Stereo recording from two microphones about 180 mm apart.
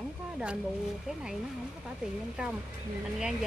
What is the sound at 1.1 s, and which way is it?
Speech, 5° right (ahead or behind).